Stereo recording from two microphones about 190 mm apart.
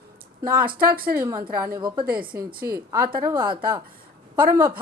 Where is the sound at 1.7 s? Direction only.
25° right (ahead or behind).